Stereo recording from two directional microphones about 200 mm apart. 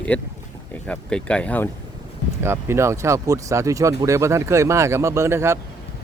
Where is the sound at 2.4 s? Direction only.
10° right (ahead or behind).